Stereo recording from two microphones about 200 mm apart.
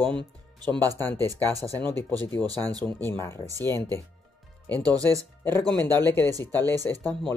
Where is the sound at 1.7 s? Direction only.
10° left (ahead or behind).